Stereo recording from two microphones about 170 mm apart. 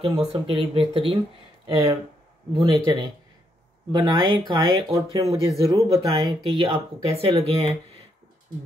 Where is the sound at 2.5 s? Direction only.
30° right (ahead or behind).